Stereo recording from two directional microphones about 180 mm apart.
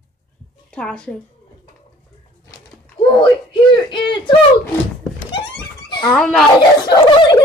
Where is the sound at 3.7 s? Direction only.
25° left (ahead or behind).